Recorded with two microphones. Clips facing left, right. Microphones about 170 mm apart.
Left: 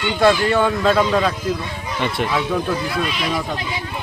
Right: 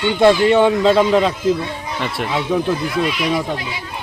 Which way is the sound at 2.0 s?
Centre (ahead or behind).